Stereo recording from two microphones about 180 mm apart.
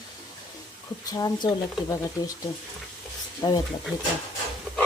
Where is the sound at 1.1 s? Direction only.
20° left (ahead or behind).